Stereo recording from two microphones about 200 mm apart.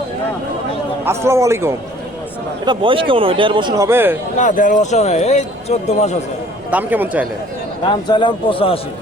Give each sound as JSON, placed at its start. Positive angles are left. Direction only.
{"t": 1.0, "sound": "a man's voice", "side_deg": -15}
{"t": 2.6, "sound": "speech", "side_deg": -25}
{"t": 4.4, "sound": "speech", "side_deg": 40}
{"t": 6.7, "sound": "a man's voice", "side_deg": -10}
{"t": 7.9, "sound": "a man's voice", "side_deg": 25}